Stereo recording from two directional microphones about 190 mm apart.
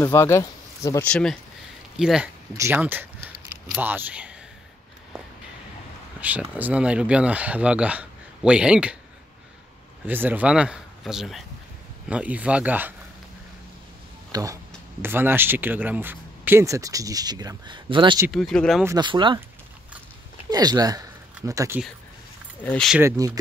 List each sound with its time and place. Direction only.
0.0 s speech: 15° left (ahead or behind)
1.0 s speech: 5° left (ahead or behind)
6.2 s speech: 10° right (ahead or behind)
10.0 s speech: 10° right (ahead or behind)
14.3 s speech: 20° right (ahead or behind)
18.3 s speech: centre (ahead or behind)
18.9 s speech: 25° right (ahead or behind)
20.4 s speech: 20° right (ahead or behind)
22.6 s speech: 5° left (ahead or behind)
22.9 s speech: 15° right (ahead or behind)